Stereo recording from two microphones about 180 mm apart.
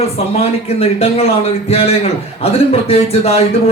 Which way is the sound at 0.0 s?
35° left (ahead or behind).